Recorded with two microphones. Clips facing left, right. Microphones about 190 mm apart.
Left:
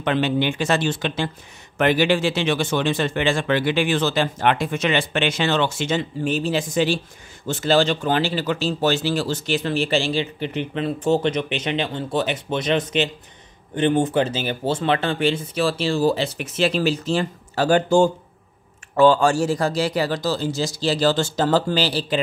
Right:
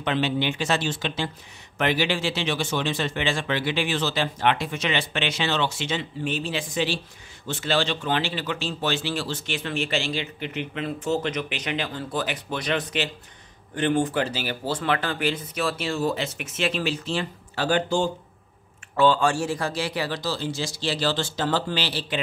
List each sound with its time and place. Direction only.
0.0 s speech: 50° left (ahead or behind)